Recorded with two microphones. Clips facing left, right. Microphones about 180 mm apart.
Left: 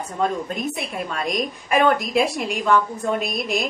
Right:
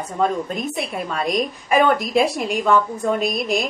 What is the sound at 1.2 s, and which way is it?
Speech, centre (ahead or behind).